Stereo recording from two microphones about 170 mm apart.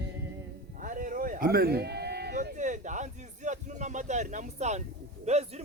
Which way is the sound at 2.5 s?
45° right (ahead or behind).